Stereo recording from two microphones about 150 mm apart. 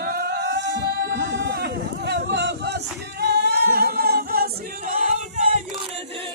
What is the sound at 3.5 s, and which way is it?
A capella, 90° right.